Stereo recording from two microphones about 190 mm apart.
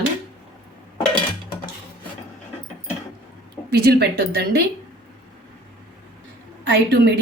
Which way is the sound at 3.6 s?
55° right (ahead or behind).